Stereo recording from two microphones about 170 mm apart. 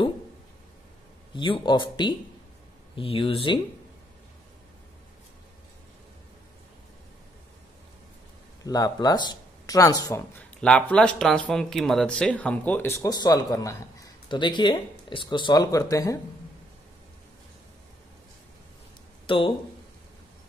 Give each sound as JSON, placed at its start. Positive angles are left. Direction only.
{"t": 1.3, "sound": "speech", "side_deg": 30}
{"t": 8.6, "sound": "speech", "side_deg": 20}
{"t": 10.6, "sound": "speech", "side_deg": 5}
{"t": 19.2, "sound": "speech", "side_deg": 30}